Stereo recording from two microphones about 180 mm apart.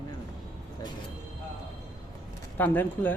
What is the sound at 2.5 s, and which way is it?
Speech, 10° left (ahead or behind).